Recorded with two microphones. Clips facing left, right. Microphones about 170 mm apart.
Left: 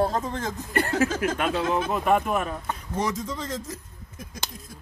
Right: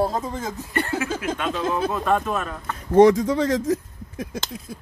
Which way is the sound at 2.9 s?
65° right (ahead or behind).